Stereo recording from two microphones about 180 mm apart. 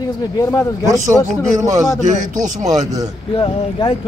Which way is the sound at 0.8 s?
20° right (ahead or behind).